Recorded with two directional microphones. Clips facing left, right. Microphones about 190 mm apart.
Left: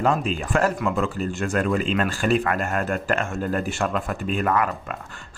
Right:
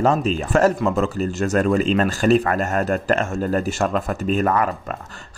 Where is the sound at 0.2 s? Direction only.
40° right (ahead or behind).